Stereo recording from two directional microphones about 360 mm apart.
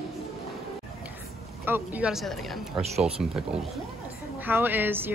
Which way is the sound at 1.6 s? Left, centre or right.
Centre.